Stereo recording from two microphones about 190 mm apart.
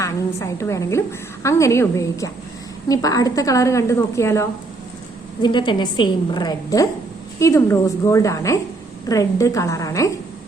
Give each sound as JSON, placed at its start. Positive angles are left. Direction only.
{"t": 0.0, "sound": "a woman's voice", "side_deg": 15}